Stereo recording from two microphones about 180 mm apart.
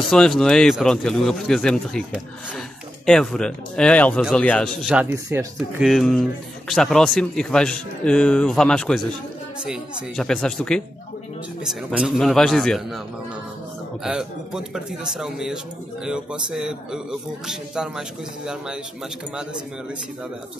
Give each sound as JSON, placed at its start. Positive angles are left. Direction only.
{"t": 0.0, "sound": "a man's voice", "side_deg": 0}
{"t": 3.1, "sound": "a man's voice", "side_deg": 5}
{"t": 5.3, "sound": "speech", "side_deg": -15}
{"t": 5.8, "sound": "a man's voice", "side_deg": 0}
{"t": 14.0, "sound": "a man's voice", "side_deg": -5}